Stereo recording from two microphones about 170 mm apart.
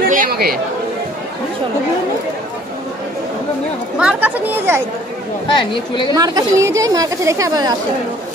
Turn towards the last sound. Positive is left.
turn(degrees=-25)  # may be behind; listen again after turning